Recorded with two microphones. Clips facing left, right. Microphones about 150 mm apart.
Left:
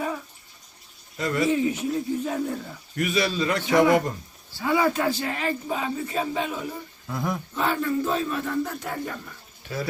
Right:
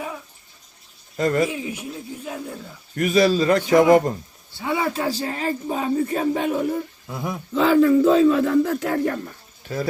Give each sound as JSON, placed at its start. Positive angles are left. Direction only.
{"t": 1.1, "sound": "speech", "side_deg": -45}
{"t": 1.5, "sound": "speech", "side_deg": -10}
{"t": 2.9, "sound": "a man's voice", "side_deg": -40}
{"t": 4.6, "sound": "a man's voice", "side_deg": -25}
{"t": 7.5, "sound": "speech", "side_deg": -90}
{"t": 9.6, "sound": "speech", "side_deg": -40}